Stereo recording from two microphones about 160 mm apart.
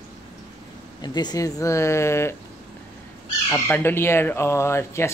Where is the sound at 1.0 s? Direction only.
25° left (ahead or behind).